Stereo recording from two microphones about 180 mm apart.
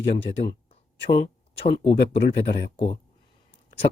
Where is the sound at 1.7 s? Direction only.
75° left (ahead or behind).